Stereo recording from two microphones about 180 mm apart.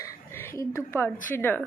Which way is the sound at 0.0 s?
15° left (ahead or behind).